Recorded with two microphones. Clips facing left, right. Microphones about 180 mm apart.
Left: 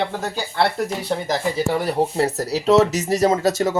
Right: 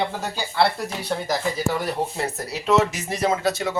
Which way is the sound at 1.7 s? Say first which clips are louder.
Left 5 dB; 30° left (ahead or behind).